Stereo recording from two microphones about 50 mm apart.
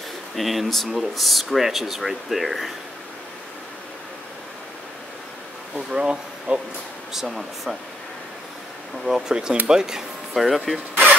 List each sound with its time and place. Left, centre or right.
0.4 s speech: centre
5.9 s a sound: centre
7.2 s speech: centre
9.0 s speech: centre
10.3 s speech: centre